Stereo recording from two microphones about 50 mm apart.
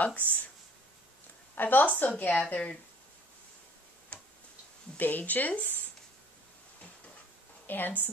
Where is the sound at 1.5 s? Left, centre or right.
Left.